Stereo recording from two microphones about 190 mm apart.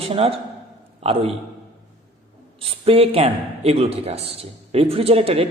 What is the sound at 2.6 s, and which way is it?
A man's voice, 30° right (ahead or behind).